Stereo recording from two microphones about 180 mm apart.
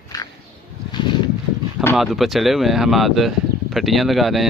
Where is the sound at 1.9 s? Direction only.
Centre (ahead or behind).